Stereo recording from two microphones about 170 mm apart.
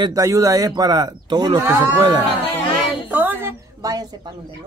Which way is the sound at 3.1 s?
10° right (ahead or behind).